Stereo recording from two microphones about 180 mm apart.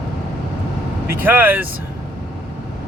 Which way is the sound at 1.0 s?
10° right (ahead or behind).